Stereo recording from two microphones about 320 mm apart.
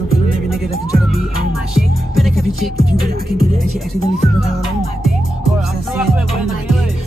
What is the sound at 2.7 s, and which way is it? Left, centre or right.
Music, right.